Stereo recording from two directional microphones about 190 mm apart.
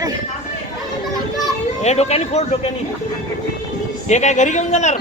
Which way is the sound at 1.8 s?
35° left (ahead or behind).